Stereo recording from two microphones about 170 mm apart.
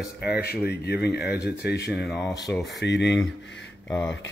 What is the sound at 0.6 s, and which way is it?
Speech, 70° left (ahead or behind).